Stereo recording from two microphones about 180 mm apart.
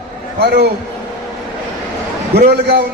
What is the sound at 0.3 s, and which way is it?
Speech, 65° right (ahead or behind).